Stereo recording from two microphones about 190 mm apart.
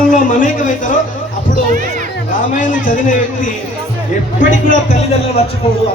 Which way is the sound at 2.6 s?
45° left (ahead or behind).